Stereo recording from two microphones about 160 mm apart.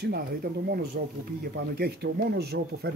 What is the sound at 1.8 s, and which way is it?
Speech, 85° right.